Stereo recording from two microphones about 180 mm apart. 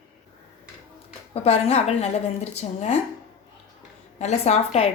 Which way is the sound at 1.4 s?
35° left (ahead or behind).